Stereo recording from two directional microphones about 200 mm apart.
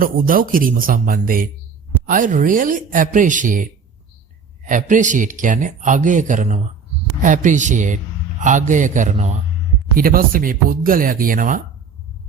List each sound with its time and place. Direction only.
0.0 s speech: 45° right (ahead or behind)
10.0 s speech: 45° right (ahead or behind)